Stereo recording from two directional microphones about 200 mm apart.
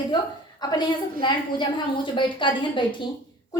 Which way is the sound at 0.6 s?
20° left (ahead or behind).